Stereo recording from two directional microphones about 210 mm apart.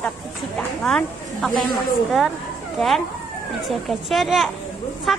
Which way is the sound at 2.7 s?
Centre (ahead or behind).